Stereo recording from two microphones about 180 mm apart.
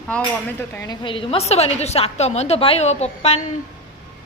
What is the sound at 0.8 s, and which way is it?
A woman's voice, 25° left (ahead or behind).